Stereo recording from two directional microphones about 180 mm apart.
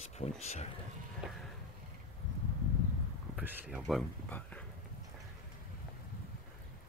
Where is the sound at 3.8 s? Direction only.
5° left (ahead or behind).